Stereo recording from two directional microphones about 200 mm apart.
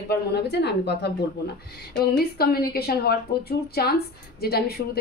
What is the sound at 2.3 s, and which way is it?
A woman's voice, 50° left (ahead or behind).